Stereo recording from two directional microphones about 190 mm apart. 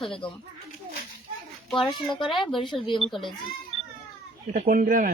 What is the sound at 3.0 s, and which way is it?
Speech, centre (ahead or behind).